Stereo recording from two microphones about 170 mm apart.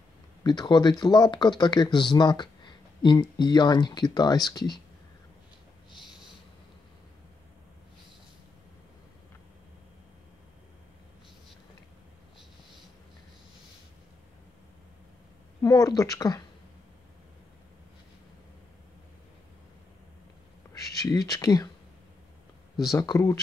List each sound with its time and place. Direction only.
0.4 s speech: 25° left (ahead or behind)
15.6 s speech: 20° left (ahead or behind)
21.0 s speech: 20° left (ahead or behind)
22.9 s speech: 20° left (ahead or behind)